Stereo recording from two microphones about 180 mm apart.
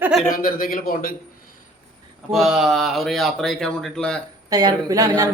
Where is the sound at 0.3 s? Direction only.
50° left (ahead or behind).